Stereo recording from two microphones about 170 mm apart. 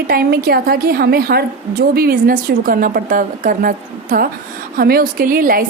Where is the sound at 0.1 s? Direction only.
60° right (ahead or behind).